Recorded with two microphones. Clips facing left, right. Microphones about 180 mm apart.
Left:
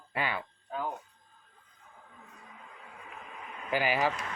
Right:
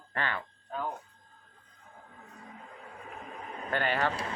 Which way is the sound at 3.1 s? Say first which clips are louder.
Right 4 dB; 40° right (ahead or behind).